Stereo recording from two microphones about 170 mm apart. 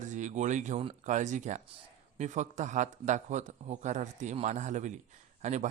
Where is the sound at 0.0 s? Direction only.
45° right (ahead or behind).